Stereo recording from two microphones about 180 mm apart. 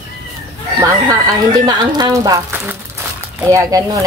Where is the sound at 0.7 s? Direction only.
20° right (ahead or behind).